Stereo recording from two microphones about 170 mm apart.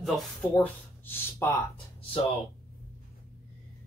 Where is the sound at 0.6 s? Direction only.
15° left (ahead or behind).